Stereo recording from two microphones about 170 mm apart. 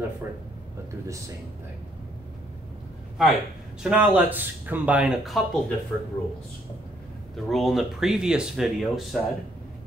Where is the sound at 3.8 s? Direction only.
5° right (ahead or behind).